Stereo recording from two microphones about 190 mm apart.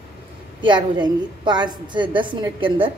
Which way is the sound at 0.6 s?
25° right (ahead or behind).